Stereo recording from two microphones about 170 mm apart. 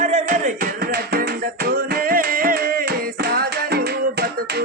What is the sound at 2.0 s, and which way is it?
Music, 55° right (ahead or behind).